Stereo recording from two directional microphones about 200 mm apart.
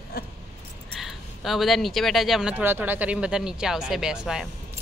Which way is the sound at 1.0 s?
Centre (ahead or behind).